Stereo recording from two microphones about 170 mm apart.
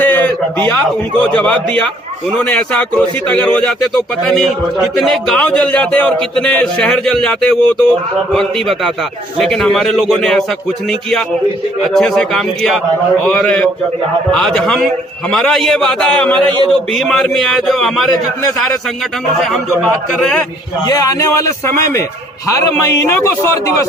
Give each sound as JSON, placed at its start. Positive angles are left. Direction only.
{"t": 0.0, "sound": "a sound", "side_deg": 10}
{"t": 1.4, "sound": "speech", "side_deg": 5}
{"t": 11.9, "sound": "speech", "side_deg": 5}
{"t": 19.8, "sound": "speech", "side_deg": 5}
{"t": 20.8, "sound": "a man's voice", "side_deg": 20}
{"t": 23.1, "sound": "speech", "side_deg": 15}